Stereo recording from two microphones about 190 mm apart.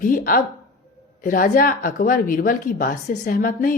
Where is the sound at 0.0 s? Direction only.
45° left (ahead or behind).